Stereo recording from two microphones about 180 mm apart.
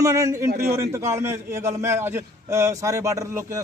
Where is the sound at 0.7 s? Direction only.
15° right (ahead or behind).